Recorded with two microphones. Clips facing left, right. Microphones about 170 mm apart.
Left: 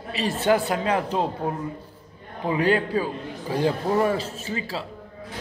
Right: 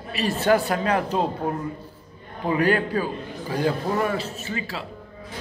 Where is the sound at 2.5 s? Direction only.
25° left (ahead or behind).